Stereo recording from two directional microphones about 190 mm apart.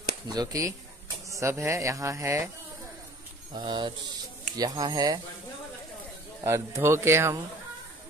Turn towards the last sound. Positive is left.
turn(degrees=-15)  # may be behind; listen again after turning